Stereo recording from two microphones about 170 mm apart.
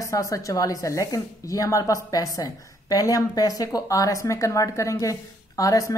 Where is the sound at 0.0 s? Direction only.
20° left (ahead or behind).